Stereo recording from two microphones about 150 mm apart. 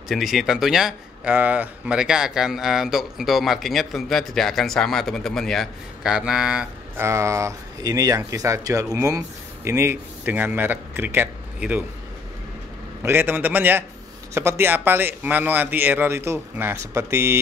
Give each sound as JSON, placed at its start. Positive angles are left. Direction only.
{"t": 0.1, "sound": "speech", "side_deg": 0}
{"t": 7.0, "sound": "speech", "side_deg": -20}
{"t": 13.0, "sound": "a man's voice", "side_deg": -15}